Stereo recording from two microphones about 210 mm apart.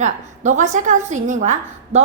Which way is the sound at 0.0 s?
35° right (ahead or behind).